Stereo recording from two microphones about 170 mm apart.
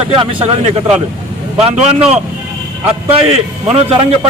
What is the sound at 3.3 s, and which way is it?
A man's voice, 35° right (ahead or behind).